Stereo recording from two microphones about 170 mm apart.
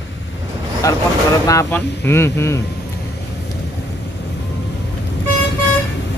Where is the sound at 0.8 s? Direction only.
20° left (ahead or behind).